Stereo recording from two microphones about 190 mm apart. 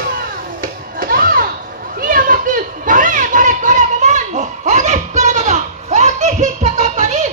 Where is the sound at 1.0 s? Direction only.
50° right (ahead or behind).